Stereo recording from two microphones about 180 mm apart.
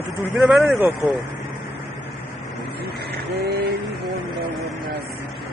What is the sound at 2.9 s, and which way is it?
Vehicle, 65° right (ahead or behind).